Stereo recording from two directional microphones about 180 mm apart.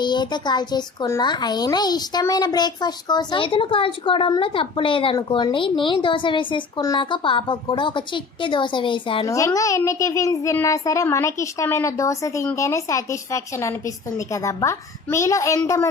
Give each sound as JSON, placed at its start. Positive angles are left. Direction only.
{"t": 0.0, "sound": "a child's voice", "side_deg": 25}
{"t": 9.2, "sound": "a child's voice", "side_deg": 20}